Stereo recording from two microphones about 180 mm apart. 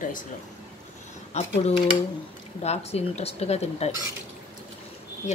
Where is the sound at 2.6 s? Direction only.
35° left (ahead or behind).